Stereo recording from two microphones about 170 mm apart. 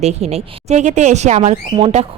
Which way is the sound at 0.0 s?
40° right (ahead or behind).